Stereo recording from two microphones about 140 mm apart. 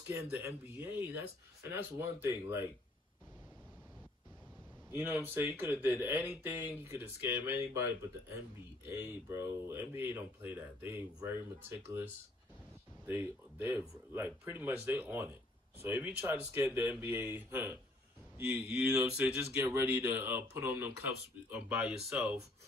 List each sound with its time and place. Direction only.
0.0 s speech: 15° right (ahead or behind)
4.9 s speech: 15° right (ahead or behind)
8.8 s speech: 15° right (ahead or behind)
13.0 s speech: 15° right (ahead or behind)